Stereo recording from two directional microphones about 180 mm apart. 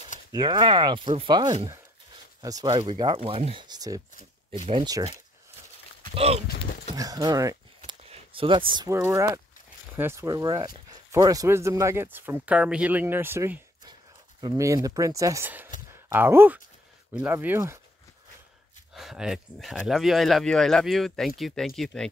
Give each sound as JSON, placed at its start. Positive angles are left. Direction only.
{"t": 0.3, "sound": "speech", "side_deg": -25}
{"t": 6.1, "sound": "speech", "side_deg": -35}
{"t": 7.0, "sound": "a sound", "side_deg": -20}
{"t": 8.0, "sound": "a sound", "side_deg": -30}
{"t": 9.1, "sound": "speech", "side_deg": -20}
{"t": 18.9, "sound": "speech", "side_deg": 0}